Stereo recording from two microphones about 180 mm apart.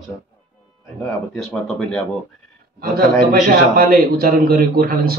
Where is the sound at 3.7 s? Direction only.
60° right (ahead or behind).